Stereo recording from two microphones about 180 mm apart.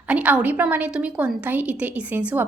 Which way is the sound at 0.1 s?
5° right (ahead or behind).